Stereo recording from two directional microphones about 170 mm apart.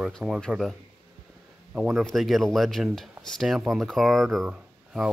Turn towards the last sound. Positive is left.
turn(degrees=-5)  # may be behind; listen again after turning